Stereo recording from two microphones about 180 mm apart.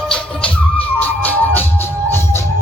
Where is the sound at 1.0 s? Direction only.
10° left (ahead or behind).